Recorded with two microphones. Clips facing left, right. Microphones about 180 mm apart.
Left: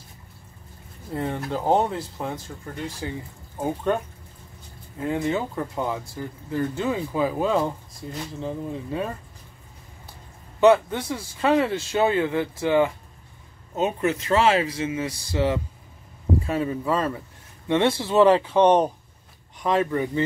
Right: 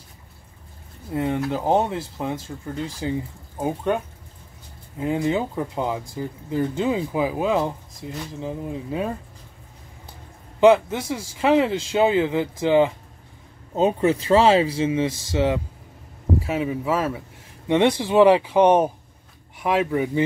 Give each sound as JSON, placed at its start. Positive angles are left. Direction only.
{"t": 1.1, "sound": "speech", "side_deg": -15}
{"t": 10.6, "sound": "speech", "side_deg": -10}
{"t": 13.7, "sound": "speech", "side_deg": -30}
{"t": 16.4, "sound": "speech", "side_deg": -5}
{"t": 17.6, "sound": "speech", "side_deg": -15}